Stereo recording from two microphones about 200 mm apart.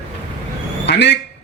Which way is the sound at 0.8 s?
60° left (ahead or behind).